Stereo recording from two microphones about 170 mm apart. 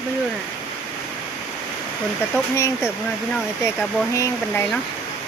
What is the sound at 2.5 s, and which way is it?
Speech, 15° left (ahead or behind).